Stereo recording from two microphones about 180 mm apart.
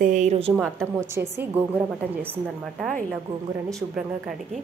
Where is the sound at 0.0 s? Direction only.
45° right (ahead or behind).